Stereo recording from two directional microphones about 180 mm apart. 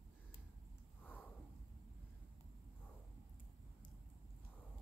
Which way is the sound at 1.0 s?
10° left (ahead or behind).